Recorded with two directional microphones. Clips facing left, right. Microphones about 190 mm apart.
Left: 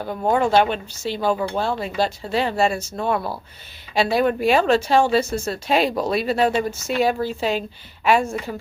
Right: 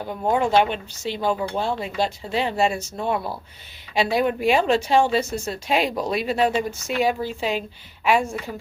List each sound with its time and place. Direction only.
0.0 s speech: 15° right (ahead or behind)